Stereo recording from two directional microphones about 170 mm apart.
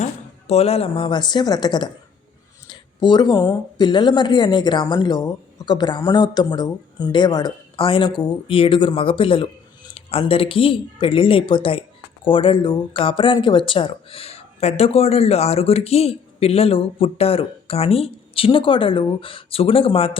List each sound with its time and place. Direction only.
0.0 s speech: 40° left (ahead or behind)